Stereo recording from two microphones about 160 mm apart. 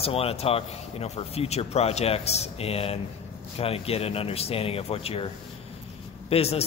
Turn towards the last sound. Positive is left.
turn(degrees=40)  # may be behind; listen again after turning